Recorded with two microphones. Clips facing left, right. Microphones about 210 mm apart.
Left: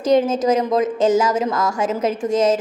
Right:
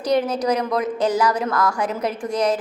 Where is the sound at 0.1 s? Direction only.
25° left (ahead or behind).